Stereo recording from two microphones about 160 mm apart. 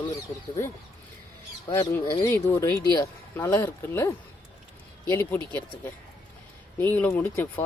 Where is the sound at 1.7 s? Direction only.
20° left (ahead or behind).